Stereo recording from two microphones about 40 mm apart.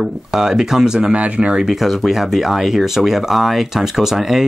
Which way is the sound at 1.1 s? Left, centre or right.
Right.